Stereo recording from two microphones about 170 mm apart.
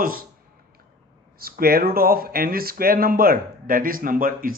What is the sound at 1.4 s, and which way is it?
Speech, 60° right (ahead or behind).